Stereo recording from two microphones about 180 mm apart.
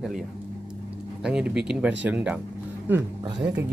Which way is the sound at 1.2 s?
5° right (ahead or behind).